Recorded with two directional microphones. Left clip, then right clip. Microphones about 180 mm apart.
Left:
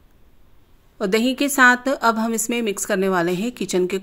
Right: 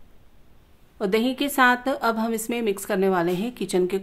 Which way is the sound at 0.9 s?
15° left (ahead or behind).